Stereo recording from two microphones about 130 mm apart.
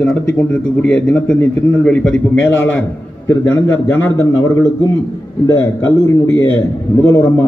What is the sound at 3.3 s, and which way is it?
A man's voice, 20° left (ahead or behind).